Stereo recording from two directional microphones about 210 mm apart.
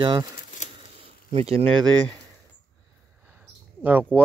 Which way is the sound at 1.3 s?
30° right (ahead or behind).